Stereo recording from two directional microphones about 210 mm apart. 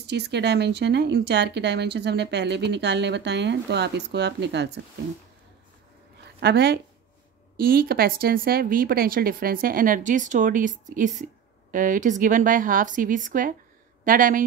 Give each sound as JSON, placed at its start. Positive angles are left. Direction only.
{"t": 0.0, "sound": "speech", "side_deg": -55}
{"t": 6.4, "sound": "a woman's voice", "side_deg": -50}